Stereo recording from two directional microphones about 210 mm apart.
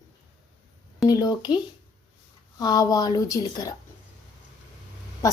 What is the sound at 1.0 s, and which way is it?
Speech, 20° left (ahead or behind).